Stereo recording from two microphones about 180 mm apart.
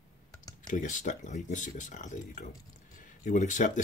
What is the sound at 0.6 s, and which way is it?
Speech, 45° left (ahead or behind).